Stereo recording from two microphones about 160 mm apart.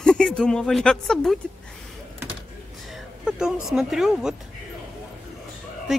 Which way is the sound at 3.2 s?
5° right (ahead or behind).